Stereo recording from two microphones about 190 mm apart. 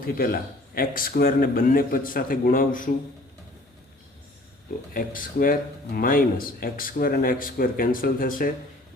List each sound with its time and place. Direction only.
0.0 s speech: 50° left (ahead or behind)
4.9 s speech: 45° left (ahead or behind)